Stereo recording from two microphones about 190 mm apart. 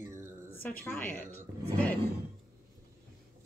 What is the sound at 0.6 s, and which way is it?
Speech, 5° left (ahead or behind).